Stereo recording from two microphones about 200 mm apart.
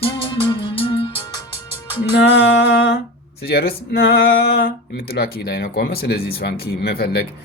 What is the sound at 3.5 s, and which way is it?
Speech, 50° left (ahead or behind).